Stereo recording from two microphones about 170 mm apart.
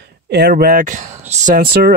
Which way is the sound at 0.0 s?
75° right (ahead or behind).